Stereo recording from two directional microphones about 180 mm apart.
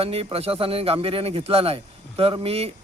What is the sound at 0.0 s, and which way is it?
Speech, 35° right (ahead or behind).